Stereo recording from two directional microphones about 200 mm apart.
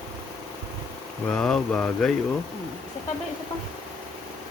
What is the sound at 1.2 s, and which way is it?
Speech, 5° left (ahead or behind).